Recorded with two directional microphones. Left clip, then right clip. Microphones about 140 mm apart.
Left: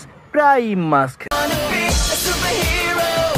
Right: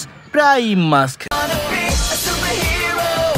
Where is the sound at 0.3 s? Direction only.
30° right (ahead or behind).